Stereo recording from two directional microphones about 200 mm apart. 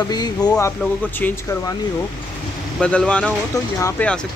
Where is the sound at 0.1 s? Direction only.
20° left (ahead or behind).